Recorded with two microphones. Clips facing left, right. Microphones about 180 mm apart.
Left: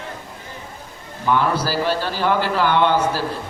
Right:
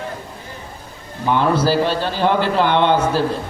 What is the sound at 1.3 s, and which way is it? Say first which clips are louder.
Speech: right 3 dB; 20° right (ahead or behind).